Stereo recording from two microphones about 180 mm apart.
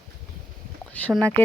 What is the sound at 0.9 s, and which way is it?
Speech, 5° left (ahead or behind).